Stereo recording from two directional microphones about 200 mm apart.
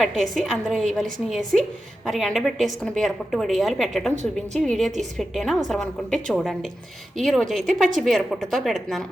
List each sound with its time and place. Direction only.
0.0 s a woman's voice: centre (ahead or behind)
2.0 s a woman's voice: centre (ahead or behind)
4.1 s a woman's voice: 35° right (ahead or behind)
4.6 s a woman's voice: centre (ahead or behind)